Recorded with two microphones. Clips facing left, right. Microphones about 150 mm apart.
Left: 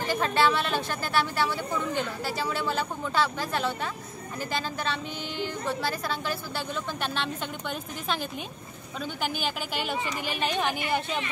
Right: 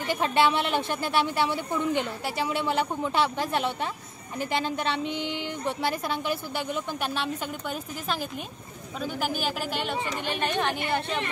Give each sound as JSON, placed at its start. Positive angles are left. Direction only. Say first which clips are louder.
{"t": 0.1, "sound": "a woman's voice", "louder": "right 1 dB", "side_deg": -20}
{"t": 9.0, "sound": "a woman's voice", "louder": "right 2 dB", "side_deg": 0}